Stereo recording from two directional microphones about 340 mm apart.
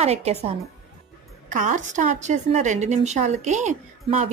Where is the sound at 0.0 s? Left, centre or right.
Centre.